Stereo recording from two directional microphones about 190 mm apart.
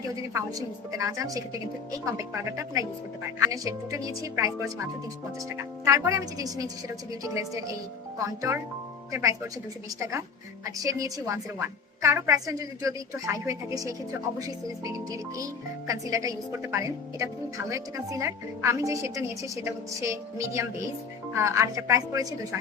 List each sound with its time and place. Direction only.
0.3 s a woman's voice: 15° right (ahead or behind)
10.0 s a woman's voice: 15° right (ahead or behind)